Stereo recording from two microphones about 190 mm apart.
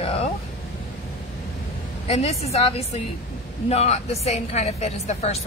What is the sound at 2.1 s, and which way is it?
A woman's voice, 35° left (ahead or behind).